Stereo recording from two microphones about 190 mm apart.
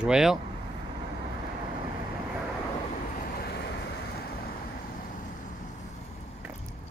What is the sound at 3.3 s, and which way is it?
Vehicle, 55° left (ahead or behind).